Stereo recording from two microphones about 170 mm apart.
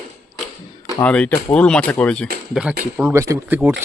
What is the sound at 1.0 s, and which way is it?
Speech, 10° left (ahead or behind).